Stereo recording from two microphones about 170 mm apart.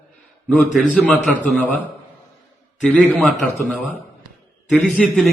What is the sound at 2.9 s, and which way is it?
Speech, 5° left (ahead or behind).